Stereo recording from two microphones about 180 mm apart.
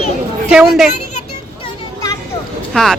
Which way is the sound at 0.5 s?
Centre (ahead or behind).